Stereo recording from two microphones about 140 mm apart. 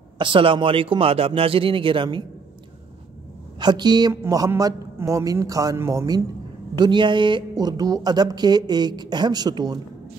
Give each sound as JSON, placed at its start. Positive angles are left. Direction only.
{"t": 0.2, "sound": "speech", "side_deg": -40}
{"t": 3.5, "sound": "speech", "side_deg": -30}